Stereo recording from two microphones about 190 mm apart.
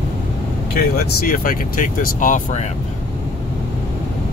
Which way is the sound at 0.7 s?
50° left (ahead or behind).